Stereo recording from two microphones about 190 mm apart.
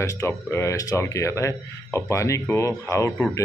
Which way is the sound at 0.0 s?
15° left (ahead or behind).